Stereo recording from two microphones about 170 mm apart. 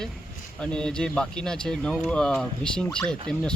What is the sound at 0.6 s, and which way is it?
Speech, 5° left (ahead or behind).